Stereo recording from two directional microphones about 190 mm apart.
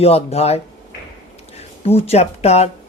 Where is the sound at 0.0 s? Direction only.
35° left (ahead or behind).